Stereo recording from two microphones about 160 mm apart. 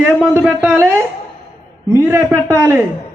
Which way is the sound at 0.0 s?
10° right (ahead or behind).